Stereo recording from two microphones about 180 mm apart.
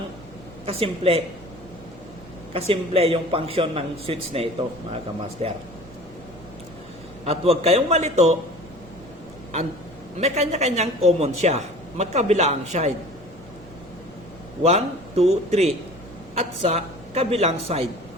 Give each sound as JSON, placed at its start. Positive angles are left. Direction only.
{"t": 0.6, "sound": "a man's voice", "side_deg": -30}
{"t": 2.5, "sound": "a man's voice", "side_deg": -30}
{"t": 7.3, "sound": "a man's voice", "side_deg": -35}
{"t": 10.2, "sound": "a man's voice", "side_deg": -35}
{"t": 14.6, "sound": "a man's voice", "side_deg": -35}